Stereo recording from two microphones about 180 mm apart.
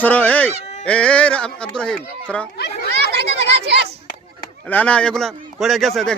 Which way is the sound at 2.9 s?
65° right (ahead or behind).